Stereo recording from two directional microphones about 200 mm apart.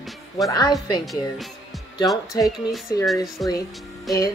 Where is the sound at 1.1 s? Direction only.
Centre (ahead or behind).